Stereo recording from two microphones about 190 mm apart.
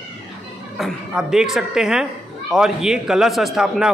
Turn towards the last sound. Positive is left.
turn(degrees=0)  # may be behind; listen again after turning